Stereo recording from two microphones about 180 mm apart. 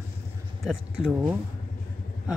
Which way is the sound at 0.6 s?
5° right (ahead or behind).